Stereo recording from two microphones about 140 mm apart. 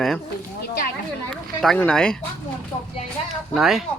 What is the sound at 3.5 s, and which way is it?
Speech, centre (ahead or behind).